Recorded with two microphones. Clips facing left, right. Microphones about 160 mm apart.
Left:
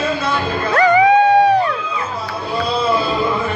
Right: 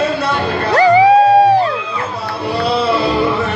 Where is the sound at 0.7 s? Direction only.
30° right (ahead or behind).